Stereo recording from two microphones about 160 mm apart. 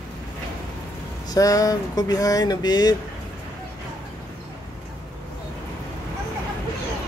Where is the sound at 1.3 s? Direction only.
20° left (ahead or behind).